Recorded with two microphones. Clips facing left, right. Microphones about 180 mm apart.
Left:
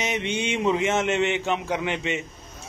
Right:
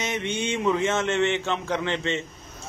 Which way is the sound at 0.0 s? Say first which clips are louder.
Left 1 dB; 15° left (ahead or behind).